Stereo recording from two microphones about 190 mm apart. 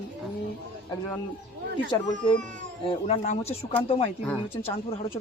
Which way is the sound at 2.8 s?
30° left (ahead or behind).